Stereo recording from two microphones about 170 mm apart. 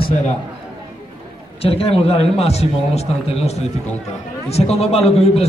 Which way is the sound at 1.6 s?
35° left (ahead or behind).